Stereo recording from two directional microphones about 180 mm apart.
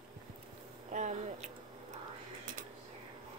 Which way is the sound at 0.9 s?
40° right (ahead or behind).